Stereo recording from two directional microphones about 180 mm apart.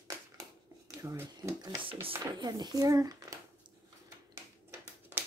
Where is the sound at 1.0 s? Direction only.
15° right (ahead or behind).